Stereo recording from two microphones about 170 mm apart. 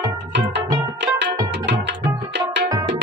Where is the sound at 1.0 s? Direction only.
90° right.